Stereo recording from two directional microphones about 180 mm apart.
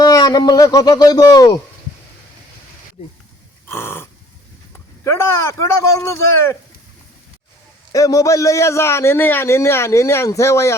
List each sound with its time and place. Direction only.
0.0 s speech: 20° left (ahead or behind)
3.7 s dog: 15° left (ahead or behind)
5.0 s a man's voice: 15° left (ahead or behind)
7.9 s a man's voice: 20° left (ahead or behind)